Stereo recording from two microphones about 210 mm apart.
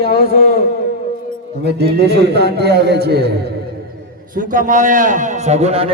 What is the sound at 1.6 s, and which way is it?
A man's voice, 50° right (ahead or behind).